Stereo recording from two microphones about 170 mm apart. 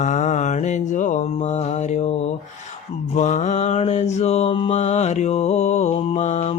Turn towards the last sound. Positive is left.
turn(degrees=40)  # may be behind; listen again after turning